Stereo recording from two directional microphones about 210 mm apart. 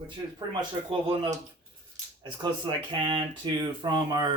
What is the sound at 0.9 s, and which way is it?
Speech, 25° right (ahead or behind).